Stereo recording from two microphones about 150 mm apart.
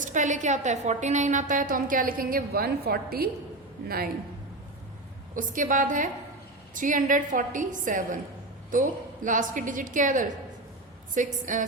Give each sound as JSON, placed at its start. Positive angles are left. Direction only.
{"t": 0.0, "sound": "a woman's voice", "side_deg": -55}
{"t": 5.3, "sound": "a woman's voice", "side_deg": -60}